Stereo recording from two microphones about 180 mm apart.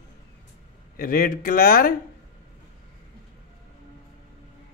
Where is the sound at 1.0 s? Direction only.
55° left (ahead or behind).